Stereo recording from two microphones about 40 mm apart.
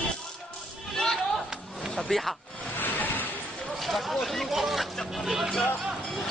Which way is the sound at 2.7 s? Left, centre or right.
Left.